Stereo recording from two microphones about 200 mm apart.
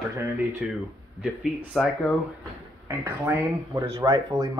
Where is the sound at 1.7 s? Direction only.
Centre (ahead or behind).